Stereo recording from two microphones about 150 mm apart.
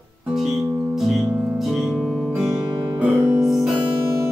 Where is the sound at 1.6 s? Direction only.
Centre (ahead or behind).